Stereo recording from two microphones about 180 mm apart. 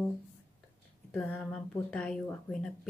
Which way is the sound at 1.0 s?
10° left (ahead or behind).